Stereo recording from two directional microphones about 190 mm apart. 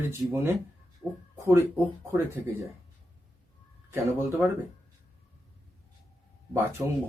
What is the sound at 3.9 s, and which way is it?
Speech, 15° right (ahead or behind).